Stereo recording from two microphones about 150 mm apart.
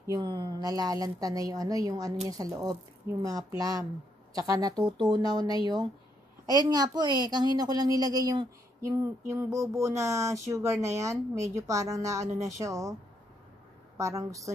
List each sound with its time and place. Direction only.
0.0 s a woman's voice: 25° right (ahead or behind)
6.7 s a woman's voice: 25° right (ahead or behind)
13.9 s a woman's voice: 20° right (ahead or behind)